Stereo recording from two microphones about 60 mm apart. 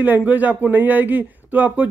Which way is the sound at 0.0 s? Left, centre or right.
Right.